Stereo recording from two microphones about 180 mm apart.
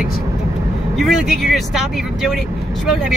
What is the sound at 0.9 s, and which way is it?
Speech, centre (ahead or behind).